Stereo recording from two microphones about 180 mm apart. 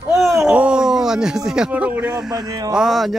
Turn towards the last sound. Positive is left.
turn(degrees=0)  # may be behind; listen again after turning